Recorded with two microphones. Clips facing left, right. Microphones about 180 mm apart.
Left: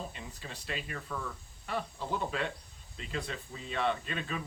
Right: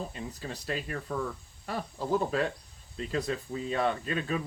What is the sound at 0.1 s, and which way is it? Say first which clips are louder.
Speech: right 7 dB; 40° right (ahead or behind).